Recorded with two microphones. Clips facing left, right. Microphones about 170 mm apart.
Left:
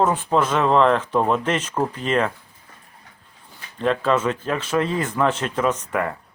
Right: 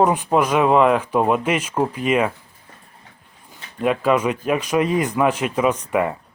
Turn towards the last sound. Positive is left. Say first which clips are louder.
# right 3 dB
turn(degrees=-15)  # may be behind; listen again after turning